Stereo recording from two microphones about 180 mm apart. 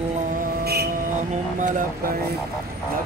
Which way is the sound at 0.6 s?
60° right (ahead or behind).